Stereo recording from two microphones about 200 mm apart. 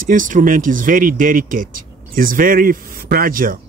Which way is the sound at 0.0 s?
40° right (ahead or behind).